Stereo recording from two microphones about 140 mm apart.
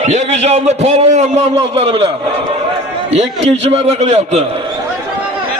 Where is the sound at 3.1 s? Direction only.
50° right (ahead or behind).